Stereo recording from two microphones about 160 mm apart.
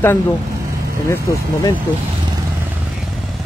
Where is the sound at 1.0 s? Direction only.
20° left (ahead or behind).